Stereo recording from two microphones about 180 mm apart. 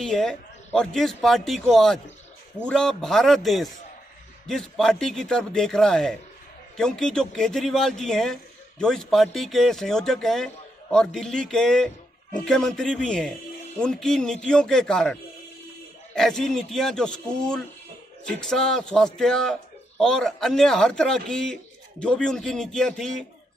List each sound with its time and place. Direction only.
0.0 s a man's voice: centre (ahead or behind)
16.2 s a man's voice: centre (ahead or behind)